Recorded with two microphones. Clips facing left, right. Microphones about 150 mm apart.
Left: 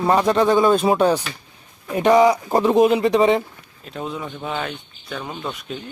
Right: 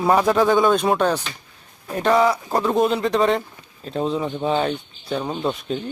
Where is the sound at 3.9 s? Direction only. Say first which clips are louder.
Right 6 dB; 30° right (ahead or behind).